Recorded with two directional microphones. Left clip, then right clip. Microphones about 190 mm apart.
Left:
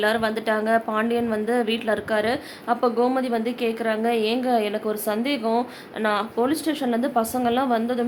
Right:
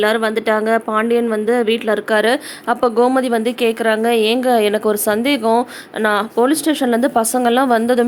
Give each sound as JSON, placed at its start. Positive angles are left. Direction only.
{"t": 0.0, "sound": "speech", "side_deg": -25}